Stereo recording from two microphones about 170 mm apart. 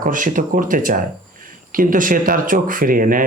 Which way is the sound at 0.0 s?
50° right (ahead or behind).